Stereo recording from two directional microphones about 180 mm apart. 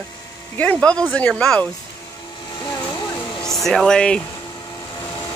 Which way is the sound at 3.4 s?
Centre (ahead or behind).